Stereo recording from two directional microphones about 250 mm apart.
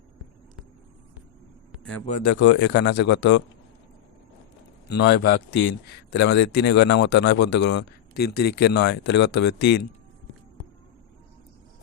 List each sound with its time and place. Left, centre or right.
1.7 s a sound: centre
2.2 s speech: left
4.9 s speech: left